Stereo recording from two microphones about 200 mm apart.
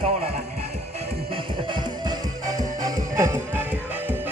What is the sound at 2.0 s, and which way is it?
Music, 20° right (ahead or behind).